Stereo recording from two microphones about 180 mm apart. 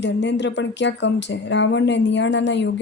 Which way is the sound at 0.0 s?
80° left.